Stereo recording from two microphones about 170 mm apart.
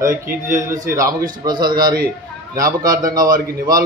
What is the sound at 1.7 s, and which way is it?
Speech, 60° right (ahead or behind).